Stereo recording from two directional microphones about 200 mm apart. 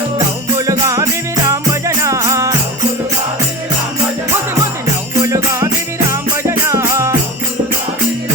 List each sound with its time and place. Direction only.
0.5 s music: 15° right (ahead or behind)
5.2 s music: 15° right (ahead or behind)
6.7 s music: 15° right (ahead or behind)